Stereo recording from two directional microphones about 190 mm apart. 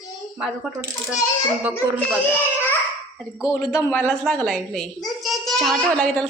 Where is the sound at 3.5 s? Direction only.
20° left (ahead or behind).